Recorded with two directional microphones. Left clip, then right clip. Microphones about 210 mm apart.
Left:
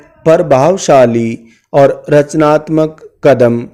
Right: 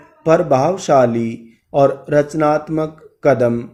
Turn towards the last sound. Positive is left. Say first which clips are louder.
# left 6 dB
turn(degrees=45)  # may be behind; listen again after turning